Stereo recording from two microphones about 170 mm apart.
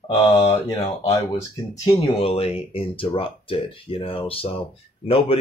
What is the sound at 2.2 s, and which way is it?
Speech, 35° left (ahead or behind).